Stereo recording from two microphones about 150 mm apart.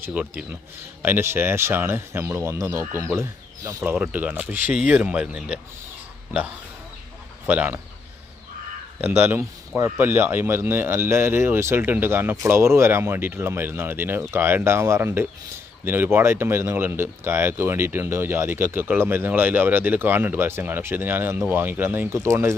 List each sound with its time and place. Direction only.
0.0 s speech: 10° right (ahead or behind)
3.9 s speech: 10° right (ahead or behind)
7.4 s speech: 10° right (ahead or behind)
9.0 s speech: 15° right (ahead or behind)